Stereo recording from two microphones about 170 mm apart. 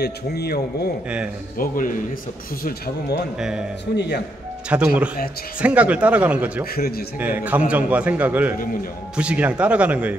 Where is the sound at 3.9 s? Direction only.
80° left.